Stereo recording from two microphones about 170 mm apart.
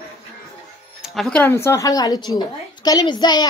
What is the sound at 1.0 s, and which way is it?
A woman's voice, centre (ahead or behind).